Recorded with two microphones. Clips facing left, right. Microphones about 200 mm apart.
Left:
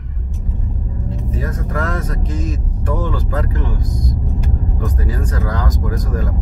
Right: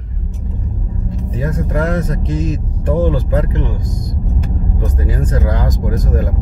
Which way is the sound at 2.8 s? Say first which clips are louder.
Right 7 dB; 25° right (ahead or behind).